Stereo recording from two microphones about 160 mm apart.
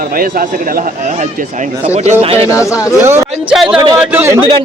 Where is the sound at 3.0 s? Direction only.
15° right (ahead or behind).